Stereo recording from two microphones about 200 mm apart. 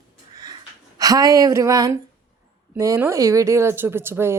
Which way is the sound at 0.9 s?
20° right (ahead or behind).